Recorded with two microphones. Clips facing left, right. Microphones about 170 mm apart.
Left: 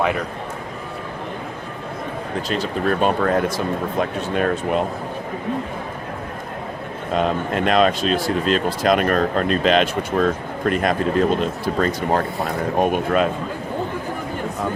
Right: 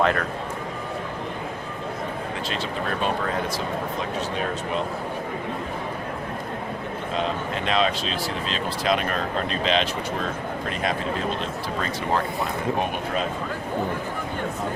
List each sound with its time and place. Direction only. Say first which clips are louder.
0.0 s speech: left 1 dB; 10° left (ahead or behind)
2.5 s speech: left 9 dB; 45° left (ahead or behind)
4.4 s speech: left 10 dB; 55° left (ahead or behind)
7.2 s speech: left 7 dB; 50° left (ahead or behind)